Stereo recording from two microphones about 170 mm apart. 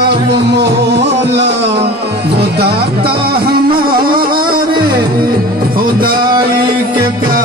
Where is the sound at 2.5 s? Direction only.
70° right (ahead or behind).